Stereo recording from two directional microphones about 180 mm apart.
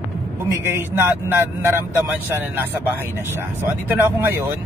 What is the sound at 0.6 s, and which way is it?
Speech, 10° right (ahead or behind).